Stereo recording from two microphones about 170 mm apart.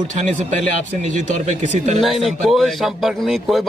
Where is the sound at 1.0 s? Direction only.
45° right (ahead or behind).